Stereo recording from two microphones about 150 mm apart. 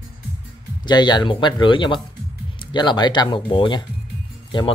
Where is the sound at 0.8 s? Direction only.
30° left (ahead or behind).